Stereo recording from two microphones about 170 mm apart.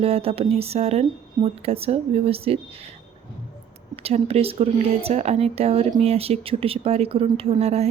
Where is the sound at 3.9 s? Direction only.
35° right (ahead or behind).